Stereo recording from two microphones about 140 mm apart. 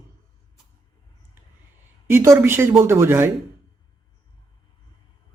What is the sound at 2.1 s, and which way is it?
A man's voice, 20° right (ahead or behind).